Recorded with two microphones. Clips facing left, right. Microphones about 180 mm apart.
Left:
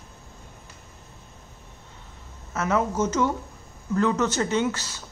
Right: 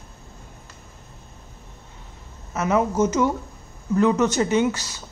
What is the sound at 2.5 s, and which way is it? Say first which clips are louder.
Speech: right 3 dB; 15° right (ahead or behind).